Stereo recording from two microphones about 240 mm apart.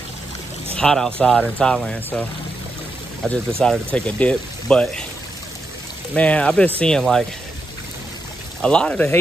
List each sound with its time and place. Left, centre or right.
0.7 s speech: centre
3.2 s speech: centre
6.1 s speech: centre
8.6 s speech: centre